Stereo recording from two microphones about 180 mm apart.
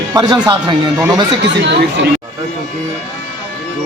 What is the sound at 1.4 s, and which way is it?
Speech, 75° right (ahead or behind).